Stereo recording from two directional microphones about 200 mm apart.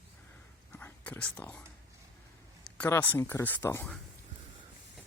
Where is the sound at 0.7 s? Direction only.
10° left (ahead or behind).